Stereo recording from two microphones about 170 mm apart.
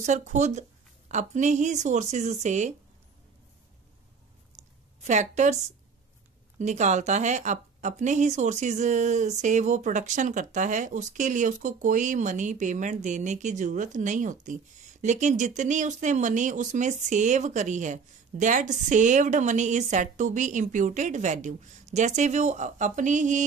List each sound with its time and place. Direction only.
0.0 s speech: 45° right (ahead or behind)
4.6 s a sound: 40° right (ahead or behind)
5.0 s speech: 45° right (ahead or behind)
6.6 s speech: 45° right (ahead or behind)